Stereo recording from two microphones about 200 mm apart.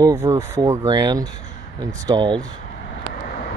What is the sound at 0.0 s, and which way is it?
Speech, 15° right (ahead or behind).